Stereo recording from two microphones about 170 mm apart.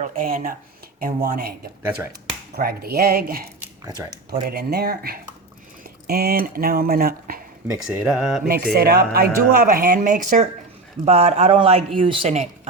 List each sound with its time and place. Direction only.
0.0 s speech: 50° right (ahead or behind); by 1.5 s 70° right (ahead or behind)
2.6 s speech: 65° right (ahead or behind)
4.4 s speech: 70° right (ahead or behind)
7.9 s speech: 5° right (ahead or behind)
8.4 s speech: 60° right (ahead or behind)
11.0 s a man's voice: 40° right (ahead or behind)